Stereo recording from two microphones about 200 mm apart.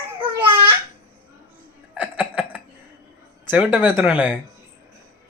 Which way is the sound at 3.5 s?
10° right (ahead or behind).